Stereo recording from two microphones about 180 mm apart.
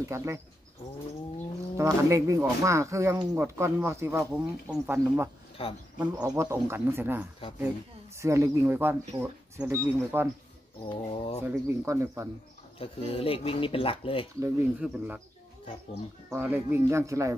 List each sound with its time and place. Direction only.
0.0 s speech: 15° right (ahead or behind)
1.8 s speech: 15° right (ahead or behind)
5.6 s speech: 30° left (ahead or behind)
6.1 s speech: 20° right (ahead or behind)
10.9 s speech: 35° left (ahead or behind)
11.4 s speech: 15° right (ahead or behind)
12.7 s speech: 30° left (ahead or behind)
14.4 s speech: 10° right (ahead or behind)
16.3 s speech: 10° right (ahead or behind)